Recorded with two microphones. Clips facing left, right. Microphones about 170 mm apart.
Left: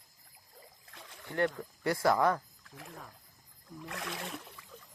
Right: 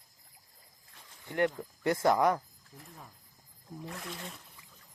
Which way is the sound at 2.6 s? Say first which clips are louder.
Left 3 dB; 80° left.